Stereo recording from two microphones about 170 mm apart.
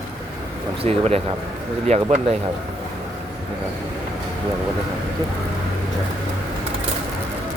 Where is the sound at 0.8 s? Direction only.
35° right (ahead or behind).